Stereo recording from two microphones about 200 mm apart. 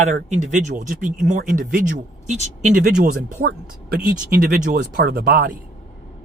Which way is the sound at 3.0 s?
40° right (ahead or behind).